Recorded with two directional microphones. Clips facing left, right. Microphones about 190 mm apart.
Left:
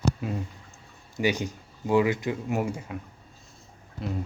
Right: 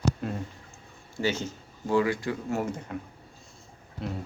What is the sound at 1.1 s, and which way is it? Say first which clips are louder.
Speech: left 3 dB; 15° left (ahead or behind).